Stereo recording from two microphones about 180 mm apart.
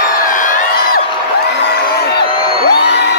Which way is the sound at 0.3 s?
45° left (ahead or behind).